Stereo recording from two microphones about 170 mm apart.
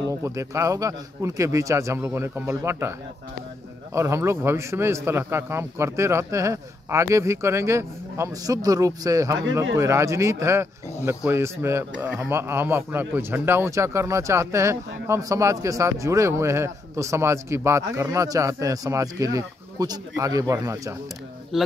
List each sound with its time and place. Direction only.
0.0 s a man's voice: 20° right (ahead or behind)
3.9 s a man's voice: 15° right (ahead or behind)
21.5 s speech: centre (ahead or behind)